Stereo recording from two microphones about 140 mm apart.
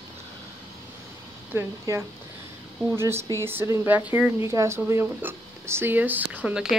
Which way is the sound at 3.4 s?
20° right (ahead or behind).